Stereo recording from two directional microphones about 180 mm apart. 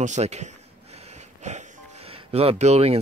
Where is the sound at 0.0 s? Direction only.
40° right (ahead or behind).